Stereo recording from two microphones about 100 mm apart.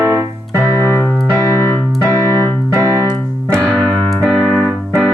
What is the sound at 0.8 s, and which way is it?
Keyboard, 25° left (ahead or behind).